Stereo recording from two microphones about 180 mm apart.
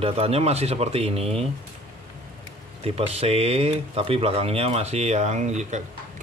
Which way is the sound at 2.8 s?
35° right (ahead or behind).